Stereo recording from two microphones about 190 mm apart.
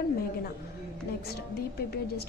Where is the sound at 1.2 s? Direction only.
55° left (ahead or behind).